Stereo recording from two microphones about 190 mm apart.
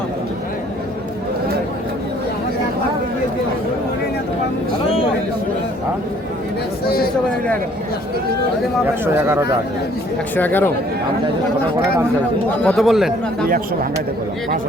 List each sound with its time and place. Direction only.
4.9 s a sound: 30° left (ahead or behind)
9.1 s speech: 15° right (ahead or behind)
10.3 s speech: 10° left (ahead or behind)
12.6 s speech: centre (ahead or behind)